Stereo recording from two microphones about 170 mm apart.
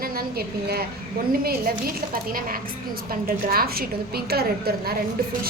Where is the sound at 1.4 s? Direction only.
60° right (ahead or behind).